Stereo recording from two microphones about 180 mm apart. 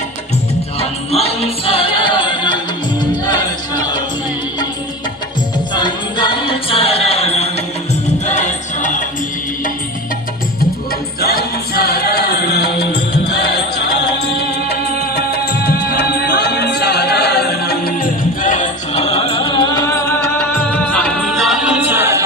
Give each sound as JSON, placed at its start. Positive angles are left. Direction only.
{"t": 0.8, "sound": "music", "side_deg": 35}
{"t": 5.7, "sound": "music", "side_deg": 25}
{"t": 11.2, "sound": "music", "side_deg": 60}
{"t": 20.4, "sound": "music", "side_deg": 10}